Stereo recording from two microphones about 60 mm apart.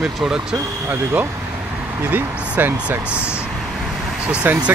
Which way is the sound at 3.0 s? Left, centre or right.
Centre.